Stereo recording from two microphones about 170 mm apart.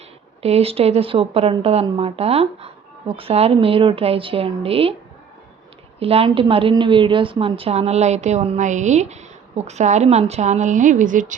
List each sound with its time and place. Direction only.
0.4 s a woman's voice: 35° right (ahead or behind)
6.0 s a woman's voice: 35° right (ahead or behind)